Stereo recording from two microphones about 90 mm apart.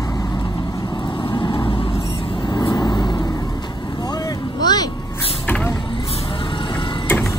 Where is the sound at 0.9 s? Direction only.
60° left (ahead or behind); by 2.5 s 80° left.